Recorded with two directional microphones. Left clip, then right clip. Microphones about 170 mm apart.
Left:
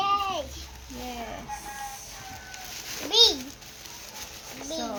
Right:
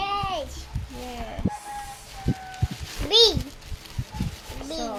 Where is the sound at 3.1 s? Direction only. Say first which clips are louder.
Right 2 dB; 70° right (ahead or behind).